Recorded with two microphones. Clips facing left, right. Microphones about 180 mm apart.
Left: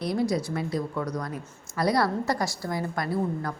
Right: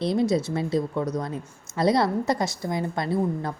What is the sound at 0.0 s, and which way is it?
A woman's voice, 25° right (ahead or behind).